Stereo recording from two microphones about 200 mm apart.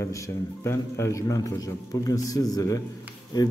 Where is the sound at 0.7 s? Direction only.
15° left (ahead or behind).